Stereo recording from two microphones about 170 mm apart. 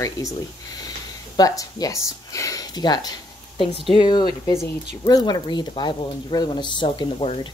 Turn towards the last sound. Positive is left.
turn(degrees=30)  # may be behind; listen again after turning